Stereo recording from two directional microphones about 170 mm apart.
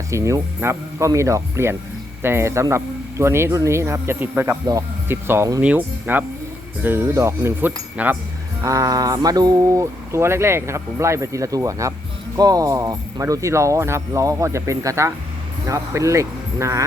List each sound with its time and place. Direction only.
0.1 s speech: 15° right (ahead or behind)